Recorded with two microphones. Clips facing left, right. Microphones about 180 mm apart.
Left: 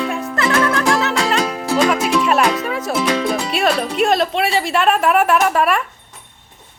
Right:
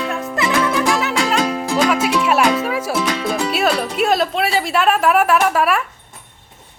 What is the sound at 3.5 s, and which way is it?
Speech, 5° right (ahead or behind).